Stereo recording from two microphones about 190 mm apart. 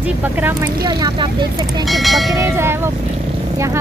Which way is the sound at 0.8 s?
20° right (ahead or behind).